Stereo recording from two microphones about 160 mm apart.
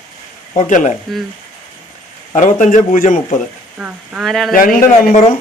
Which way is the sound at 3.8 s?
10° right (ahead or behind).